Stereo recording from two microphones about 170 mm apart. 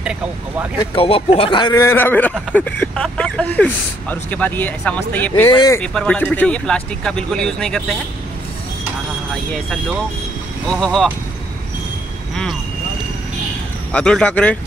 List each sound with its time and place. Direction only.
0.0 s speech: 5° right (ahead or behind)
0.9 s speech: 35° left (ahead or behind); by 5.9 s 15° left (ahead or behind)
5.9 s speech: 5° left (ahead or behind)
9.3 s speech: 5° left (ahead or behind)
13.9 s speech: 5° left (ahead or behind)